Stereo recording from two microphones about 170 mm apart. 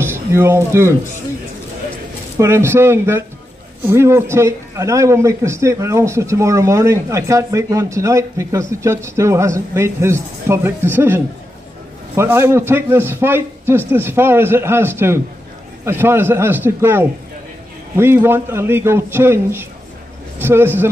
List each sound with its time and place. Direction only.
0.0 s speech: 15° right (ahead or behind)
2.3 s a man's voice: 15° right (ahead or behind)